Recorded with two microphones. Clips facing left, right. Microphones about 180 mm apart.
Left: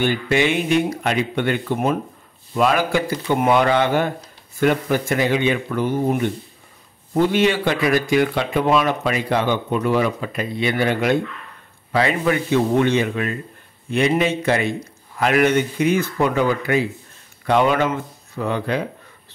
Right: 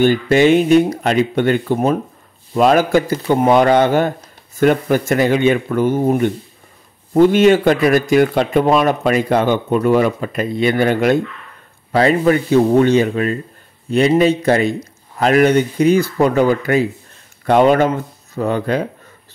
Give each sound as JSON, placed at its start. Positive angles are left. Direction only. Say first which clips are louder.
{"t": 0.0, "sound": "a man's voice", "louder": "right 7 dB", "side_deg": -45}